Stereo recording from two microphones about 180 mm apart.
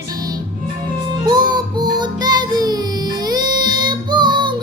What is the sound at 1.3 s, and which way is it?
Music, 25° right (ahead or behind).